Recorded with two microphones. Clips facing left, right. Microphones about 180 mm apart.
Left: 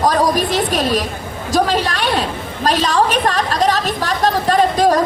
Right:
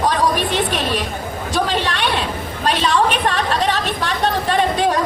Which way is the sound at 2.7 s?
40° left (ahead or behind).